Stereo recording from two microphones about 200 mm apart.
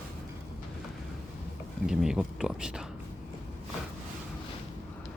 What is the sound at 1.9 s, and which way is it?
Speech, 5° right (ahead or behind).